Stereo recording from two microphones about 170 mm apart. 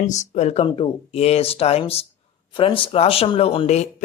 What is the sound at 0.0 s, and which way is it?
Speech, 45° left (ahead or behind).